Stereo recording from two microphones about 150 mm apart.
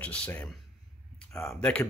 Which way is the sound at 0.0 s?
10° left (ahead or behind).